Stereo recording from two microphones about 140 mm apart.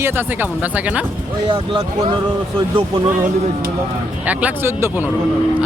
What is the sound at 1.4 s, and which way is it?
Speech, 35° right (ahead or behind).